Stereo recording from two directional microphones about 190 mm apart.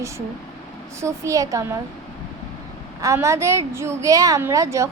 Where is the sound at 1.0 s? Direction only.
15° right (ahead or behind).